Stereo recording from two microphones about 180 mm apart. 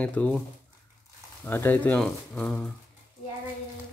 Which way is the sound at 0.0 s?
10° left (ahead or behind).